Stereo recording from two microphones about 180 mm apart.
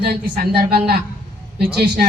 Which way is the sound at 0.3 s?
60° right (ahead or behind).